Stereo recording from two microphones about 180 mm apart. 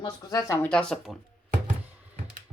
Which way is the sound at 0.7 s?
5° left (ahead or behind).